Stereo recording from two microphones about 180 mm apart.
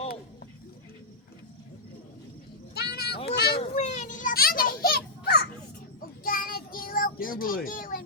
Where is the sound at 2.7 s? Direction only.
60° left (ahead or behind).